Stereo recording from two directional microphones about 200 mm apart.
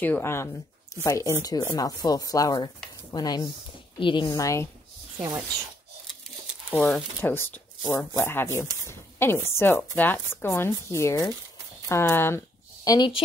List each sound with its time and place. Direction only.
0.0 s a woman's voice: 10° left (ahead or behind)
5.2 s speech: 15° right (ahead or behind)
6.7 s a woman's voice: centre (ahead or behind); by 13.2 s 20° left (ahead or behind)